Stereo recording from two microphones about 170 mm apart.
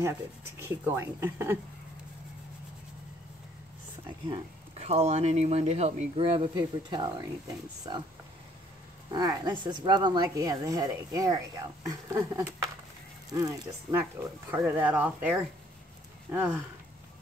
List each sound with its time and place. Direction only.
0.0 s speech: 15° right (ahead or behind)
4.3 s speech: 40° right (ahead or behind)
9.1 s speech: 25° right (ahead or behind)
14.5 s speech: 10° right (ahead or behind)